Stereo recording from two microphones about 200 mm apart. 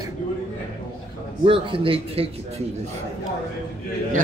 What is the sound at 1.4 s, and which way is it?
Speech, 25° right (ahead or behind).